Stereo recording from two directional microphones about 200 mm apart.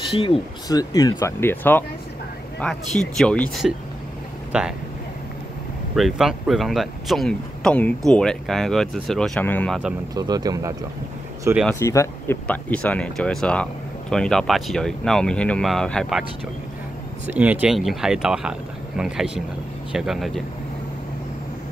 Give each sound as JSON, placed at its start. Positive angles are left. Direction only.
{"t": 0.1, "sound": "speech", "side_deg": 20}
{"t": 5.9, "sound": "speech", "side_deg": 0}
{"t": 10.1, "sound": "speech", "side_deg": -20}
{"t": 11.8, "sound": "speech", "side_deg": 15}
{"t": 17.3, "sound": "speech", "side_deg": -5}